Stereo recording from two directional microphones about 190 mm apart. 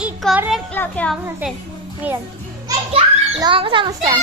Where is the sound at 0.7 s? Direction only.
10° left (ahead or behind).